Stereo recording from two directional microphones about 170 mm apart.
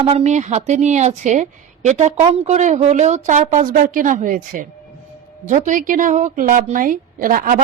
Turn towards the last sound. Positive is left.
turn(degrees=-55)  # may be behind; listen again after turning